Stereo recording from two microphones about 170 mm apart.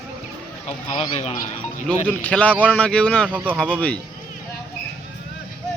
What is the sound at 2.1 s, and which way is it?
Speech, 10° left (ahead or behind).